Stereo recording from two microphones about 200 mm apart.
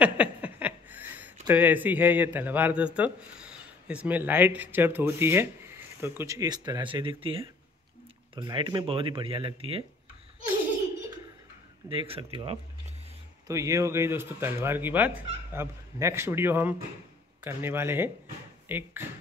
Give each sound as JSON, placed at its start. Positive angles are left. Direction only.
{"t": 0.0, "sound": "speech", "side_deg": -5}
{"t": 11.9, "sound": "speech", "side_deg": -25}